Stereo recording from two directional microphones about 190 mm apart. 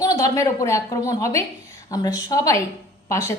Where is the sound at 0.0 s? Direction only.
20° left (ahead or behind).